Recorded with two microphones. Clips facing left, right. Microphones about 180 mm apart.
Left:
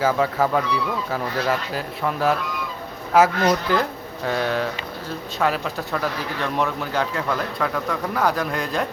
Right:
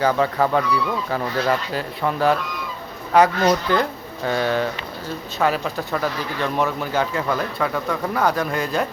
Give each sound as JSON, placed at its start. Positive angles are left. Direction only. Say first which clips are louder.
{"t": 0.0, "sound": "speech", "louder": "right 1 dB", "side_deg": 5}